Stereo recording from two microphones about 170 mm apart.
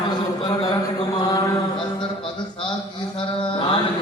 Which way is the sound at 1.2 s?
20° left (ahead or behind).